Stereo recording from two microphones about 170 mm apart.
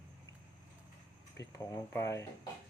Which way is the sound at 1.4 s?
15° left (ahead or behind).